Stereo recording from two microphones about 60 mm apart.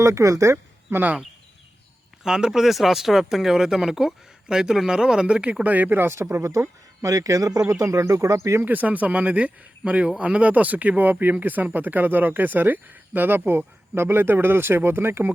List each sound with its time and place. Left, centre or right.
0.0 s speech: right
0.9 s speech: right
2.2 s speech: centre; by 8.6 s right
8.6 s speech: right